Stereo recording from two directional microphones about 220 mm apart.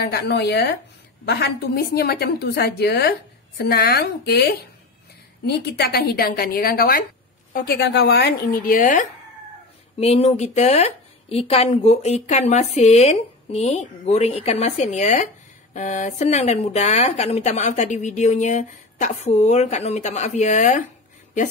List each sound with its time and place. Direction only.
0.0 s a woman's voice: 50° left (ahead or behind)
9.9 s a woman's voice: 30° left (ahead or behind)